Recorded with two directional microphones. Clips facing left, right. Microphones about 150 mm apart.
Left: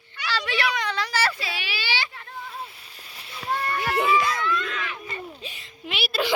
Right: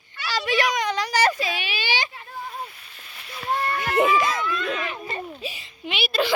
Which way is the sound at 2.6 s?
30° left (ahead or behind).